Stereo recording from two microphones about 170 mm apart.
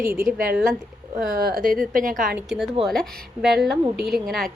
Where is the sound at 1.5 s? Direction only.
60° right (ahead or behind).